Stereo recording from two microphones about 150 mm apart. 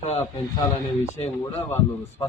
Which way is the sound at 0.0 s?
45° left (ahead or behind).